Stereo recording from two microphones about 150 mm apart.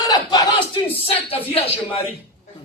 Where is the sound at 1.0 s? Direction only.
40° left (ahead or behind).